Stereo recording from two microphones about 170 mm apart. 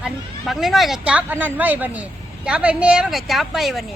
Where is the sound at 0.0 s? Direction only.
Centre (ahead or behind).